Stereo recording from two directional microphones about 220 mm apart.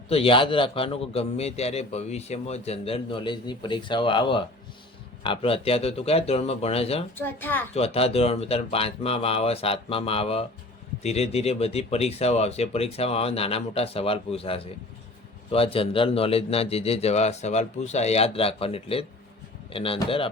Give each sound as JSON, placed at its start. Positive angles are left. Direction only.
{"t": 0.1, "sound": "a man's voice", "side_deg": 25}
{"t": 7.2, "sound": "a woman's voice", "side_deg": 10}
{"t": 7.7, "sound": "a man's voice", "side_deg": 25}